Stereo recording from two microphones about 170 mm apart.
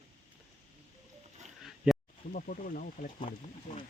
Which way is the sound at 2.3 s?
55° left (ahead or behind).